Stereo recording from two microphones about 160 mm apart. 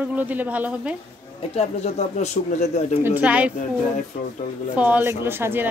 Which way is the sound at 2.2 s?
45° left (ahead or behind).